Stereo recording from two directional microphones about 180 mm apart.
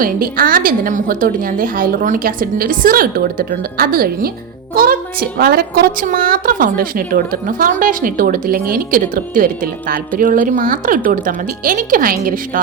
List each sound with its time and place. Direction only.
0.0 s a woman's voice: 50° right (ahead or behind)